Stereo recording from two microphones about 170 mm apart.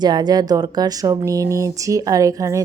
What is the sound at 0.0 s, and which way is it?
A woman's voice, 25° right (ahead or behind).